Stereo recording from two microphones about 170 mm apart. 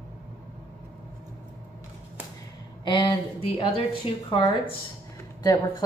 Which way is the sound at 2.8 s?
25° left (ahead or behind).